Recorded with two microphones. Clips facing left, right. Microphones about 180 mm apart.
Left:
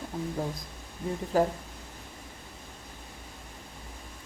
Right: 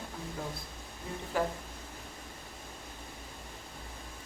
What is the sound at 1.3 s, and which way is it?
Speech, 40° left (ahead or behind).